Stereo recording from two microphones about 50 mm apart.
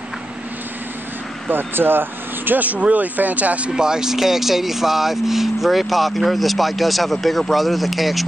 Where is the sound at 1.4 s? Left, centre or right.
Right.